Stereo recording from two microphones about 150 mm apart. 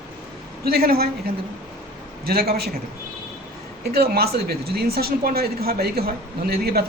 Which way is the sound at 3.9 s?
90° right.